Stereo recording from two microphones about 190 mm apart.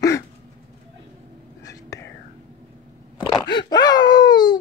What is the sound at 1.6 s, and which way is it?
Whispering, 20° left (ahead or behind).